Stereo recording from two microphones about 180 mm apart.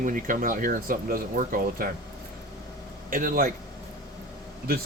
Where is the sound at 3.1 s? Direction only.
50° right (ahead or behind).